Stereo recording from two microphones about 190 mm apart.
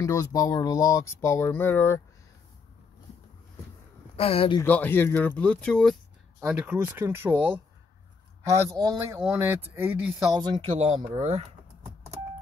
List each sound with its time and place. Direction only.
0.0 s speech: 15° left (ahead or behind)
4.2 s speech: 30° left (ahead or behind)
4.6 s speech: 10° left (ahead or behind)
6.4 s speech: 10° right (ahead or behind)
8.8 s speech: 15° right (ahead or behind)
10.3 s speech: 25° right (ahead or behind)